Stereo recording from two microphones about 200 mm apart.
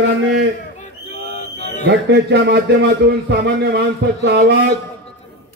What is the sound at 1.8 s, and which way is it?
Speech, 60° right (ahead or behind).